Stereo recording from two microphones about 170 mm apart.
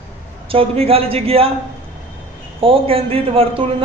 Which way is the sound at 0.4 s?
35° right (ahead or behind).